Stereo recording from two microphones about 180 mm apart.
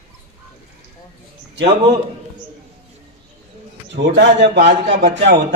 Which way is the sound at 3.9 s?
75° right (ahead or behind).